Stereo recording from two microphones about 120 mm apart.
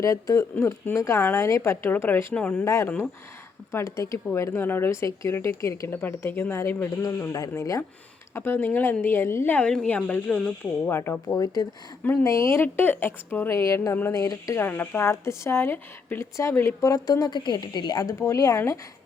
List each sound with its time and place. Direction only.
0.0 s speech: 25° left (ahead or behind)
0.5 s a woman's voice: 15° left (ahead or behind)
2.6 s a woman's voice: 25° left (ahead or behind)
11.3 s speech: 30° left (ahead or behind)